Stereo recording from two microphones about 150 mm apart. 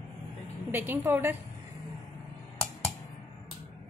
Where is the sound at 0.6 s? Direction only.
15° right (ahead or behind).